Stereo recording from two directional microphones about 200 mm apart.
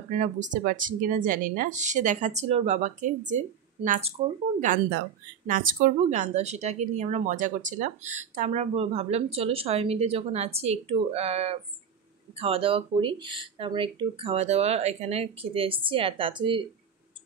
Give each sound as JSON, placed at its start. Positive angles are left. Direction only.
{"t": 0.1, "sound": "speech", "side_deg": -40}